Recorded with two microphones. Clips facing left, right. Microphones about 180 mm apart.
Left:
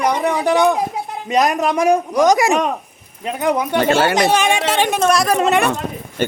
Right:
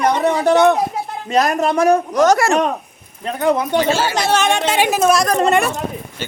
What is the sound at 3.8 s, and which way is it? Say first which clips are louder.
Speech: left 2 dB; 60° left (ahead or behind).